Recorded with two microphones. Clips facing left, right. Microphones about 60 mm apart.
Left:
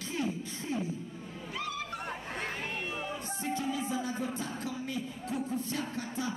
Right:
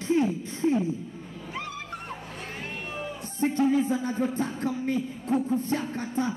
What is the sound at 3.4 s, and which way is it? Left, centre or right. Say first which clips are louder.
Speech: right 12 dB; right.